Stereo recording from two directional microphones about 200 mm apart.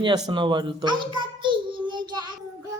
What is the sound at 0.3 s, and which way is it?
Child singing, 20° right (ahead or behind).